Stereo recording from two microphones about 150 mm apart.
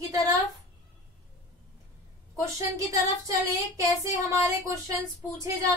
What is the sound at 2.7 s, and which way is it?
Female singing, 20° right (ahead or behind).